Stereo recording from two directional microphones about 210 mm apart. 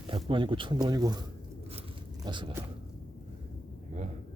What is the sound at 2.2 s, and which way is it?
Speech, 20° right (ahead or behind).